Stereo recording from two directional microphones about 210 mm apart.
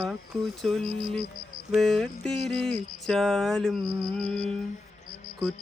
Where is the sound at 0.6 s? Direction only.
Centre (ahead or behind).